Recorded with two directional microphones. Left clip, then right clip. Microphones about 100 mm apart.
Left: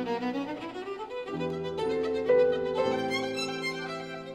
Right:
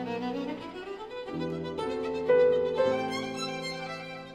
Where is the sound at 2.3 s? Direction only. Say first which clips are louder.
Right 2 dB; 40° left (ahead or behind).